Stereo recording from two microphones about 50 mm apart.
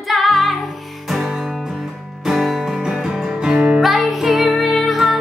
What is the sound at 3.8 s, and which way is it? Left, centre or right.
Music, centre.